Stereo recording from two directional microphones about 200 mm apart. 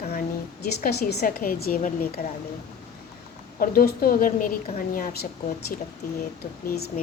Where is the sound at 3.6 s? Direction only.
45° left (ahead or behind).